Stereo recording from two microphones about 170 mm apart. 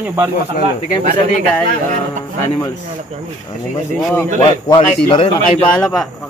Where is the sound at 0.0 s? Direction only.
15° right (ahead or behind).